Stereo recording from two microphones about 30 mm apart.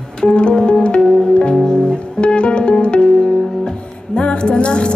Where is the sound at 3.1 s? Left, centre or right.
Left.